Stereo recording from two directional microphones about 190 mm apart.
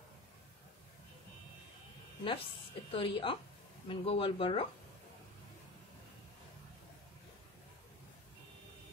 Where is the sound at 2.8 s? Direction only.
25° left (ahead or behind).